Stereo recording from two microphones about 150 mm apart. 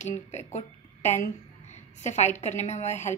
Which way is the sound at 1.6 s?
50° left (ahead or behind).